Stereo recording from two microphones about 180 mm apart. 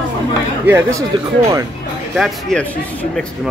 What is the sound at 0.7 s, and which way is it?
Speech, 15° right (ahead or behind).